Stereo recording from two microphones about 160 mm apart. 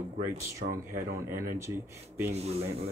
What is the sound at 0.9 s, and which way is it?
Speech, 15° right (ahead or behind).